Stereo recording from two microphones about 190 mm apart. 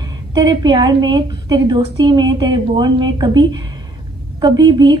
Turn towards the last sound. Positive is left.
turn(degrees=-25)  # may be behind; listen again after turning